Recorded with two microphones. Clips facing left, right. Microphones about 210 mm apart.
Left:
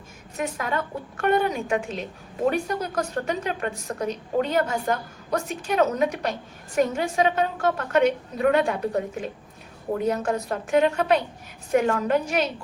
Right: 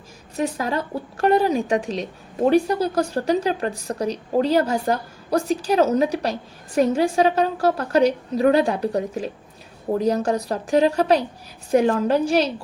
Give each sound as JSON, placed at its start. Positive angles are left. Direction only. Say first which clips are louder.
{"t": 0.3, "sound": "a woman's voice", "louder": "right 4 dB", "side_deg": -35}